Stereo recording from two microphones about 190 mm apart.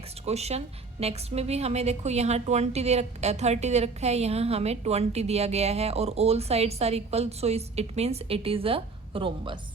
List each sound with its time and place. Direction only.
0.3 s a woman's voice: 35° right (ahead or behind)